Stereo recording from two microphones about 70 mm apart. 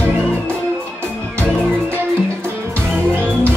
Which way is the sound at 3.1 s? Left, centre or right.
Centre.